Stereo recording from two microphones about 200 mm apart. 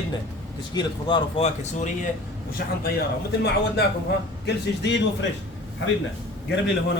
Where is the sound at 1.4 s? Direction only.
35° left (ahead or behind).